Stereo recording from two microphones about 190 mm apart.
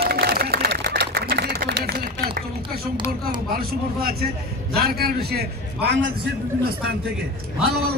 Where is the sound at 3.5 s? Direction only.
50° right (ahead or behind).